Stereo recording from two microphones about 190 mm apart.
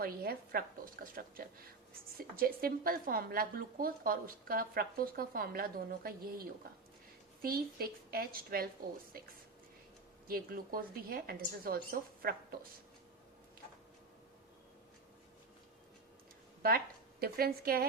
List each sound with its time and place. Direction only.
0.0 s a woman's voice: 50° right (ahead or behind)
2.1 s a woman's voice: 50° right (ahead or behind)
7.8 s a woman's voice: 50° right (ahead or behind)
16.6 s speech: 55° right (ahead or behind)